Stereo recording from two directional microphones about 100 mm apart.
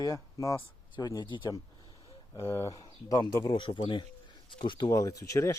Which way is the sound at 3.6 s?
55° left (ahead or behind).